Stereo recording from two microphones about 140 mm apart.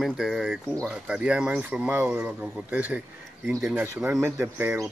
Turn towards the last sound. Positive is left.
turn(degrees=-15)  # may be behind; listen again after turning